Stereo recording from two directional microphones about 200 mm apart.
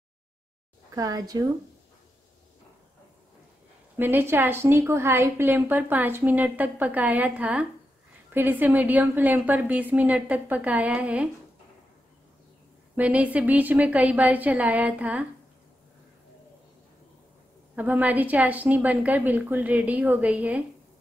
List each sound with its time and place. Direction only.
0.9 s a woman's voice: 15° right (ahead or behind)
3.9 s a woman's voice: 10° right (ahead or behind)
12.9 s a woman's voice: 5° right (ahead or behind)
17.7 s a woman's voice: 10° right (ahead or behind)